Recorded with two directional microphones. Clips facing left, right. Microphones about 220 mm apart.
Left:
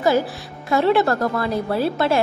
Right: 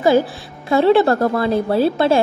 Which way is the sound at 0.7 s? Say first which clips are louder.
Right 4 dB; 30° right (ahead or behind).